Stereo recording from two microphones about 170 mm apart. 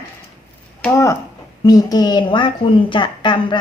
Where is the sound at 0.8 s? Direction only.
20° left (ahead or behind).